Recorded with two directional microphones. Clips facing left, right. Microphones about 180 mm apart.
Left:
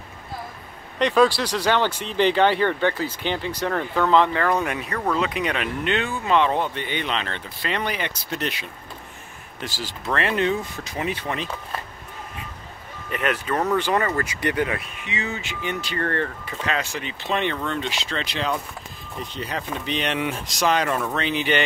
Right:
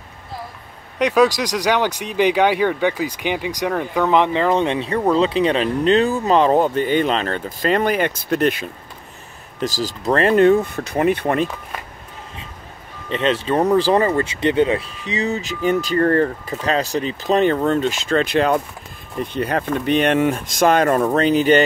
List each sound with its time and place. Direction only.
0.9 s speech: 10° right (ahead or behind); by 8.6 s 50° right (ahead or behind)
9.6 s speech: 40° right (ahead or behind)
13.1 s speech: 25° right (ahead or behind); by 21.6 s 40° right (ahead or behind)